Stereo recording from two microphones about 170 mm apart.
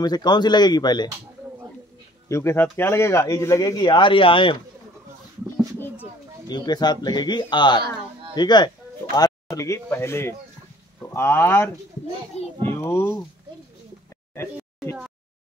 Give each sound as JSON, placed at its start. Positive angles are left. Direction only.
{"t": 0.0, "sound": "speech", "side_deg": 25}
{"t": 2.2, "sound": "speech", "side_deg": 15}
{"t": 6.5, "sound": "speech", "side_deg": 25}